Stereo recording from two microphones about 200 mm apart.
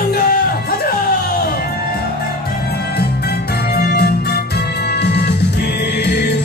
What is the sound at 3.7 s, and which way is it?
Music, 50° left (ahead or behind).